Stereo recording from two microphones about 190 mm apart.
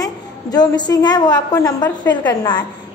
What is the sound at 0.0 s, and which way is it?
A woman's voice, 20° left (ahead or behind).